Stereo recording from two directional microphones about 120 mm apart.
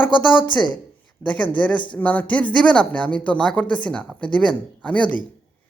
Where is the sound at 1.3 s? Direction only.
10° left (ahead or behind).